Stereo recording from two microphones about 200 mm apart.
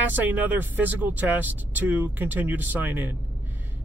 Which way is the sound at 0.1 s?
10° right (ahead or behind).